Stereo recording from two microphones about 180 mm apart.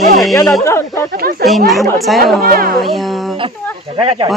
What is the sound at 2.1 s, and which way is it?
Speech, centre (ahead or behind).